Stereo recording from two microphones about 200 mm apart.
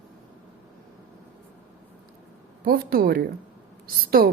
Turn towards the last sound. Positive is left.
turn(degrees=-45)  # may be behind; listen again after turning